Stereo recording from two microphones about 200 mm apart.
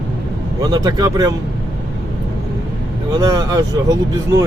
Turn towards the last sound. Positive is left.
turn(degrees=-15)  # may be behind; listen again after turning